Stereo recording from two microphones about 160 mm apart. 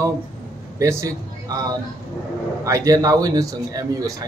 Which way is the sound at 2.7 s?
20° right (ahead or behind).